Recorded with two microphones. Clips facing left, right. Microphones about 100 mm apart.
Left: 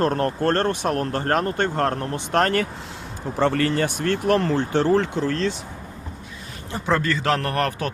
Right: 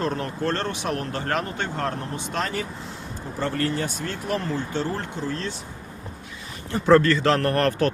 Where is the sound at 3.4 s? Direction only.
85° left.